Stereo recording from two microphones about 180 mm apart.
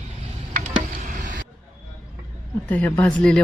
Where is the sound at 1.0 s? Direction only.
45° right (ahead or behind).